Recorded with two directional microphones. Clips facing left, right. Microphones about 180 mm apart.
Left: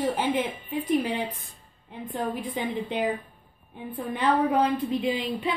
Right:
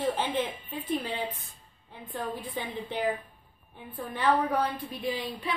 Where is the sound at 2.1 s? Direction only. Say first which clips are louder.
Left 4 dB; 20° left (ahead or behind).